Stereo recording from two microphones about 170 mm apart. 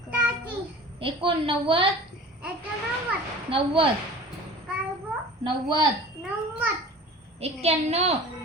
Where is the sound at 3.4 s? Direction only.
30° right (ahead or behind).